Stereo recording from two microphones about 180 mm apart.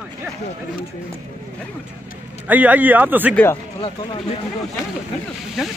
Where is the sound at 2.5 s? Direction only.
10° right (ahead or behind).